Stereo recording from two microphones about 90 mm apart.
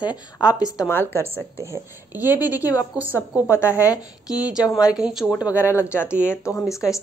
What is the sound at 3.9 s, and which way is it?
A woman's voice, 45° left (ahead or behind).